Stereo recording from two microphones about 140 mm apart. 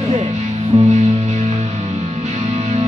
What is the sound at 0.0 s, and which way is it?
Music, 50° right (ahead or behind).